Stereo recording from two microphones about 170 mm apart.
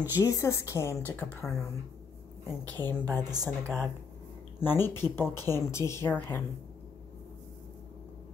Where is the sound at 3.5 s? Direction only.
10° left (ahead or behind).